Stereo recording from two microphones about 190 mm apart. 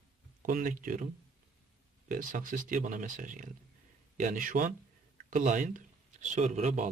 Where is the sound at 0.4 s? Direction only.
45° right (ahead or behind).